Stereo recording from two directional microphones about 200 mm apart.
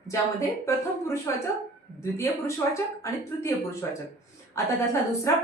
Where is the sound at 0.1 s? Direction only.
15° left (ahead or behind).